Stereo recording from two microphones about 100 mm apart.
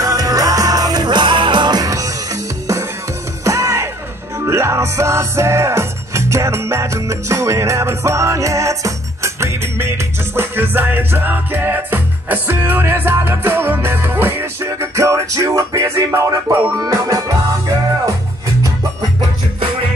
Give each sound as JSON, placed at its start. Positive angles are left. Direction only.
{"t": 0.0, "sound": "music", "side_deg": -35}